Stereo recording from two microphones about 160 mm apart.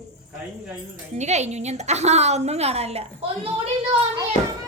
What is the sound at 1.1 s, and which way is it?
A woman's voice, 45° right (ahead or behind).